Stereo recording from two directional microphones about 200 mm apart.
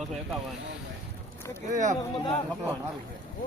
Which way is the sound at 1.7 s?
35° right (ahead or behind).